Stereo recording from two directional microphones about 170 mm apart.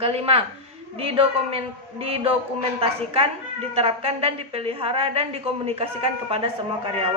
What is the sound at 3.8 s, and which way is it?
A man's voice, 35° right (ahead or behind).